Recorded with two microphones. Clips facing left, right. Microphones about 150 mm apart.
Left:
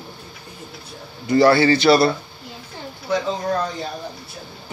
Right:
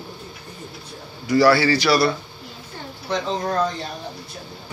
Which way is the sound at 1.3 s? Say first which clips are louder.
Left 2 dB; 25° left (ahead or behind).